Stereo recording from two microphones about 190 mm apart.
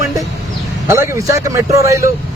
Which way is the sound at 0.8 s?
15° right (ahead or behind).